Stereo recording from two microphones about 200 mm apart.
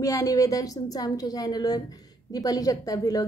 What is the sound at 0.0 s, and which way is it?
A woman's voice, 15° left (ahead or behind).